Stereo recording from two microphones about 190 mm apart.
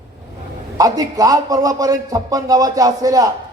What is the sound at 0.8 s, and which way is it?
A man's voice, 20° right (ahead or behind).